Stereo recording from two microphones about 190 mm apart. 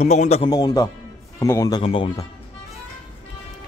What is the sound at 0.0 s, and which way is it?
Speech, 35° left (ahead or behind).